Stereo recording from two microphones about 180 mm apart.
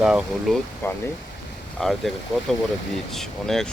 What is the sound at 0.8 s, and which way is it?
Speech, 15° left (ahead or behind).